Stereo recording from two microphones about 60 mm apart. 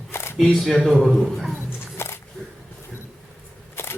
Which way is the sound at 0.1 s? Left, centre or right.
Left.